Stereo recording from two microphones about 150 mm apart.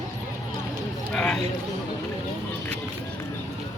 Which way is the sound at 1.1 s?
5° left (ahead or behind).